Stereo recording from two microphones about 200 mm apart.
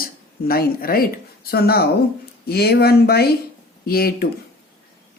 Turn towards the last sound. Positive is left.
turn(degrees=50)  # may be behind; listen again after turning